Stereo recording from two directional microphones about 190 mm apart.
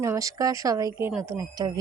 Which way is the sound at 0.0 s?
15° right (ahead or behind).